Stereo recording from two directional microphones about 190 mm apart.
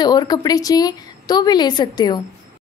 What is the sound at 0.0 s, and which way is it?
A woman's voice, 20° left (ahead or behind).